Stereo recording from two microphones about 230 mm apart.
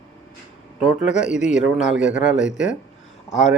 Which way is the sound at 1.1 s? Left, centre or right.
Left.